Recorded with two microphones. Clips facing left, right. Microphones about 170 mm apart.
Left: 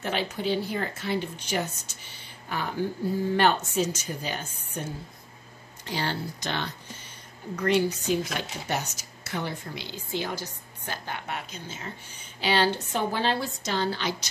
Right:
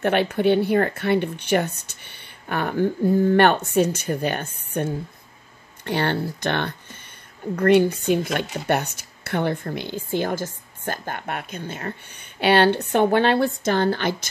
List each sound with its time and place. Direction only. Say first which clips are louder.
0.0 s speech: right 10 dB; 60° right (ahead or behind)